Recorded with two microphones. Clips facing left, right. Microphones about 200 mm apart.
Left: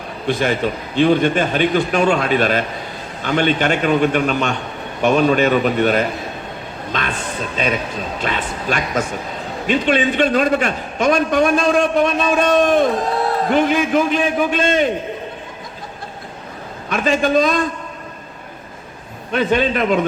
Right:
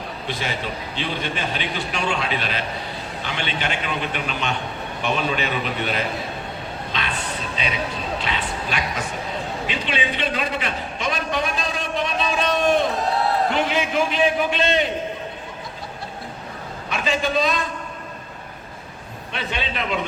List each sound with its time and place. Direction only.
0.3 s a man's voice: 50° left (ahead or behind)
16.9 s a man's voice: 45° left (ahead or behind)
19.3 s a man's voice: 50° left (ahead or behind)